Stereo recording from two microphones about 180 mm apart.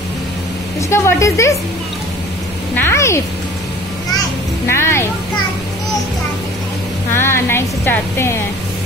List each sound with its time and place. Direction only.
0.7 s a woman's voice: 15° left (ahead or behind)
2.7 s speech: 15° left (ahead or behind)
4.6 s a woman's voice: 15° left (ahead or behind)
7.1 s a woman's voice: 15° left (ahead or behind)